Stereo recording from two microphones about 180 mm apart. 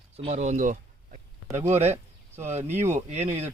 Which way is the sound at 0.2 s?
40° right (ahead or behind).